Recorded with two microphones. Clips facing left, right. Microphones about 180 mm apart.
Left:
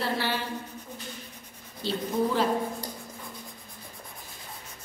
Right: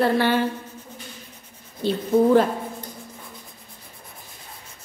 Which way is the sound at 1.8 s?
50° right (ahead or behind).